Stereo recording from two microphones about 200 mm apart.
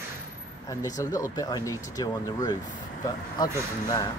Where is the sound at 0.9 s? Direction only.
20° left (ahead or behind).